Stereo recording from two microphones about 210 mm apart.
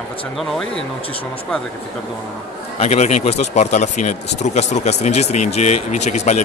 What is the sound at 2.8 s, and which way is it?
Speech, 30° left (ahead or behind).